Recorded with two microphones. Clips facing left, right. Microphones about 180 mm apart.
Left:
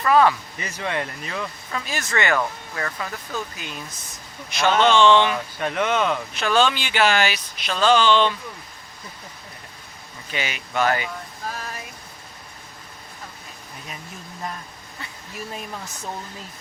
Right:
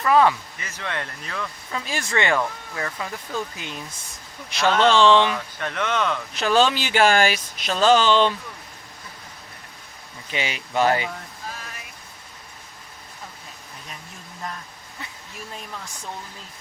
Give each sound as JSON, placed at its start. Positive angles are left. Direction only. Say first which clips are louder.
{"t": 0.0, "sound": "speech", "louder": "even", "side_deg": -20}
{"t": 0.6, "sound": "speech", "louder": "left 4 dB", "side_deg": 15}
{"t": 1.7, "sound": "speech", "louder": "right 1 dB", "side_deg": -30}
{"t": 4.6, "sound": "speech", "louder": "even", "side_deg": 0}
{"t": 5.0, "sound": "speech", "louder": "even", "side_deg": -30}
{"t": 5.5, "sound": "speech", "louder": "left 4 dB", "side_deg": 10}
{"t": 6.3, "sound": "speech", "louder": "right 3 dB", "side_deg": -35}
{"t": 10.3, "sound": "speech", "louder": "right 1 dB", "side_deg": -25}
{"t": 11.5, "sound": "a sound", "louder": "left 6 dB", "side_deg": 40}